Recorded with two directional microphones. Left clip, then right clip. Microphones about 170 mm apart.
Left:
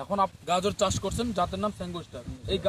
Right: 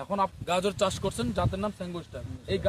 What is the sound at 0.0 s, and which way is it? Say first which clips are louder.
Speech: left 2 dB; 10° right (ahead or behind).